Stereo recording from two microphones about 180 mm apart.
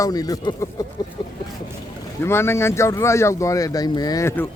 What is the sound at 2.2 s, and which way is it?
Speech, 15° left (ahead or behind).